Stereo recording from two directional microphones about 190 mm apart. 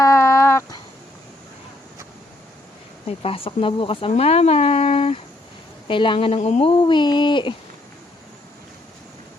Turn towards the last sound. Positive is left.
turn(degrees=25)  # may be behind; listen again after turning